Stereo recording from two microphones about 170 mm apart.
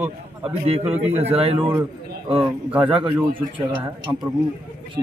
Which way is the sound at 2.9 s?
30° right (ahead or behind).